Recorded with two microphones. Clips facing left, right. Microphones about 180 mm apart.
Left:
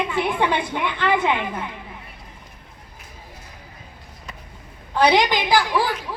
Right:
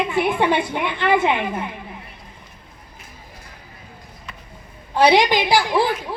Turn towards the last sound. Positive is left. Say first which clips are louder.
# right 2 dB
turn(degrees=-15)  # may be behind; listen again after turning